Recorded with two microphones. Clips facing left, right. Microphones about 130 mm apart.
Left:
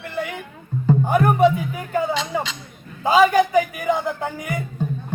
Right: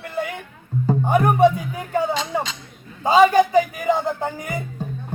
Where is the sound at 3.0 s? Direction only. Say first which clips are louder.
Right 1 dB; 25° right (ahead or behind).